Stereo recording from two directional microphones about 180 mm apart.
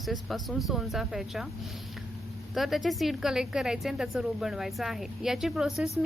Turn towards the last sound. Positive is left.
turn(degrees=0)  # may be behind; listen again after turning